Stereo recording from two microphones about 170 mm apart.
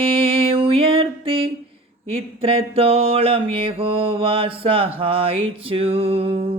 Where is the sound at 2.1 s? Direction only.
35° right (ahead or behind).